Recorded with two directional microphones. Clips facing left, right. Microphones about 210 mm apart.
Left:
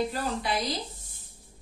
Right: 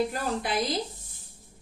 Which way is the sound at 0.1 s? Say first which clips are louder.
Right 1 dB; 50° right (ahead or behind).